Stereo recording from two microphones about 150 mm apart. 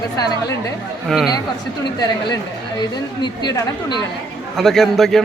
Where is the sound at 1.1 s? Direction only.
Centre (ahead or behind).